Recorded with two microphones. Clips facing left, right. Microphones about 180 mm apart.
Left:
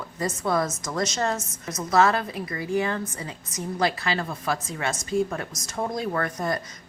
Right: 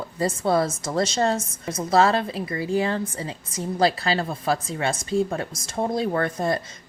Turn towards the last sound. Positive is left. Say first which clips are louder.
# right 3 dB
turn(degrees=-25)  # may be behind; listen again after turning